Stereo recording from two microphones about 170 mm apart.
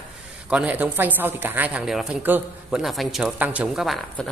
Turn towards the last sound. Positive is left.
turn(degrees=0)  # may be behind; listen again after turning